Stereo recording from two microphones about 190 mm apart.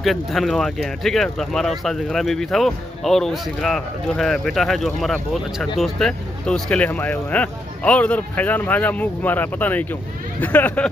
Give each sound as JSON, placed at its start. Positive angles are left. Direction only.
{"t": 0.0, "sound": "speech", "side_deg": 0}